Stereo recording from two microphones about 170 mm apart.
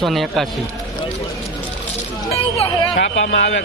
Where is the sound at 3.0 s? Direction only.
90° left.